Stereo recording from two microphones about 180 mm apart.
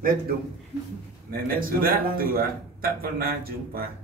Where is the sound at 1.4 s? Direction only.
55° right (ahead or behind).